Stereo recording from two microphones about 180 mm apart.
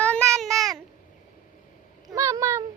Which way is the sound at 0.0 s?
5° left (ahead or behind).